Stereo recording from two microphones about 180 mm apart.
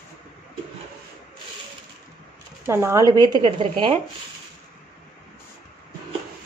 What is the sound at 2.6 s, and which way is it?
Speech, 15° right (ahead or behind).